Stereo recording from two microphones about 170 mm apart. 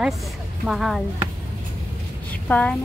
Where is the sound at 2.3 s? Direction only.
5° left (ahead or behind).